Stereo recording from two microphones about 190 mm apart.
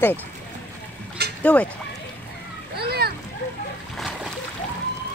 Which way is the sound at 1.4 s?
5° left (ahead or behind).